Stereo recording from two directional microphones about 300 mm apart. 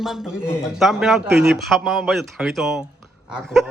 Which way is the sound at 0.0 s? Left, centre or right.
Centre.